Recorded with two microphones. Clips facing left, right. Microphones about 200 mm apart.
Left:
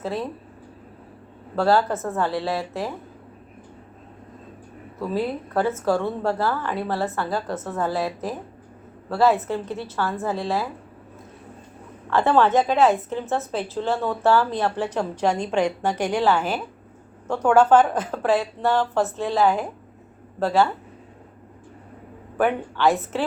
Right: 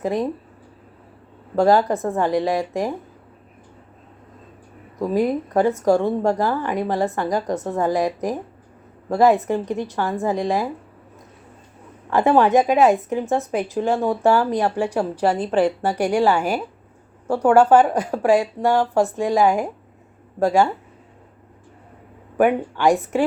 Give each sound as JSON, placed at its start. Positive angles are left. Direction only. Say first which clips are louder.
{"t": 0.0, "sound": "speech", "louder": "right 5 dB", "side_deg": -15}
{"t": 1.5, "sound": "speech", "louder": "right 4 dB", "side_deg": -15}
{"t": 4.9, "sound": "speech", "louder": "right 5 dB", "side_deg": -15}
{"t": 12.1, "sound": "speech", "louder": "right 3 dB", "side_deg": -15}
{"t": 22.4, "sound": "speech", "louder": "right 4 dB", "side_deg": -15}